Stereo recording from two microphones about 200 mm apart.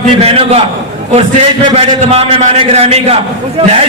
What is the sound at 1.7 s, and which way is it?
A man's voice, 35° right (ahead or behind).